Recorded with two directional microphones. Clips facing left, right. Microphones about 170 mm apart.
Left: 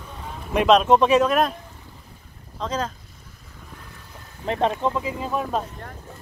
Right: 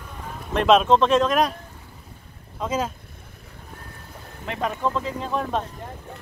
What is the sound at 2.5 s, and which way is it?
Speech, 10° right (ahead or behind).